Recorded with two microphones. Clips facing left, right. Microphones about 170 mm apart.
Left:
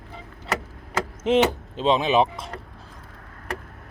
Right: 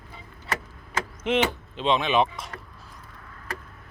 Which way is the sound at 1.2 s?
40° left (ahead or behind).